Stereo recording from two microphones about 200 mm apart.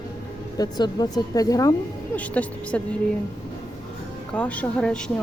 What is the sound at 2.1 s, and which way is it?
Speech, 5° left (ahead or behind).